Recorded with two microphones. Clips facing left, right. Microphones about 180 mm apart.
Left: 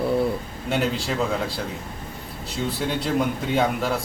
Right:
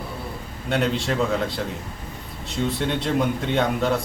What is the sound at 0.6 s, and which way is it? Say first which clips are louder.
A man's voice: right 2 dB; centre (ahead or behind).